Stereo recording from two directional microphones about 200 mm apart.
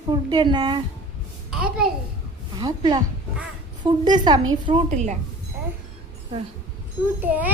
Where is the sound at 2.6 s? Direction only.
20° right (ahead or behind).